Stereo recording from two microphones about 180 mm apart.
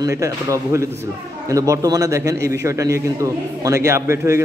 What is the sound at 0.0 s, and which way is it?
A man's voice, 20° right (ahead or behind).